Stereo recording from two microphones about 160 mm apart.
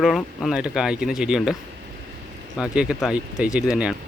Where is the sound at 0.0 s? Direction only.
Centre (ahead or behind).